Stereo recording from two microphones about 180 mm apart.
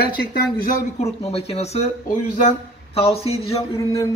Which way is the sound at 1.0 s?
35° left (ahead or behind).